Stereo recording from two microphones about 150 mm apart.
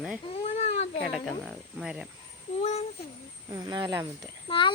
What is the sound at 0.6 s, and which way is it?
Cat, 40° left (ahead or behind).